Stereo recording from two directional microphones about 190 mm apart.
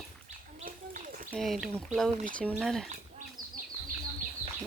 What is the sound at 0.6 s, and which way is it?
Children playing, 45° right (ahead or behind).